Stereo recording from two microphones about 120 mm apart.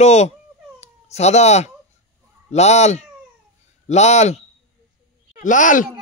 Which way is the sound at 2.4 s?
70° left (ahead or behind).